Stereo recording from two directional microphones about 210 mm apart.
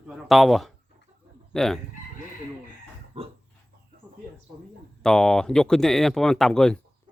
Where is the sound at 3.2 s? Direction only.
30° right (ahead or behind).